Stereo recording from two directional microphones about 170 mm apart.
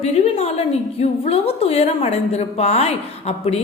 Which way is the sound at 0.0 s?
40° left (ahead or behind).